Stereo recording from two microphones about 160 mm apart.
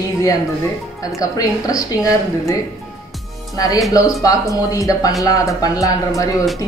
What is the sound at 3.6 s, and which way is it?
Speech, 20° left (ahead or behind).